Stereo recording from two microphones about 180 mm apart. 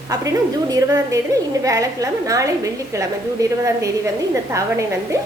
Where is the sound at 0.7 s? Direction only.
20° right (ahead or behind).